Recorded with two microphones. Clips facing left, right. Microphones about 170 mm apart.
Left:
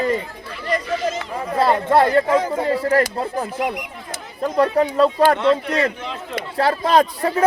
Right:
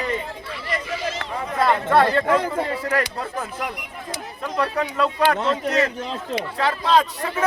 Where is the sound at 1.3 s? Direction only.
30° left (ahead or behind).